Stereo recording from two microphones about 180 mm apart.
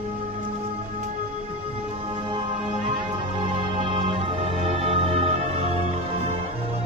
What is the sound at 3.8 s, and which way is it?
Music, 30° right (ahead or behind).